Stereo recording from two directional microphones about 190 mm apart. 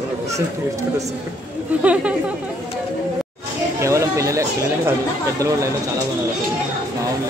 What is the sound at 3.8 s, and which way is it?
Speech, 15° right (ahead or behind).